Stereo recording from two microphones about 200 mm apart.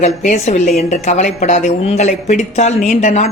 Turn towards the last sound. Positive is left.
turn(degrees=35)  # may be behind; listen again after turning